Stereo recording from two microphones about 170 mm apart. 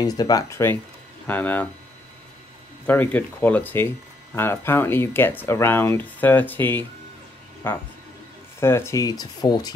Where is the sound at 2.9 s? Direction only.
10° left (ahead or behind).